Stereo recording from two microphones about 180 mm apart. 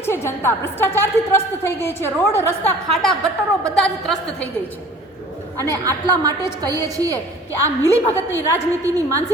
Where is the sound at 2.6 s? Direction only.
Centre (ahead or behind).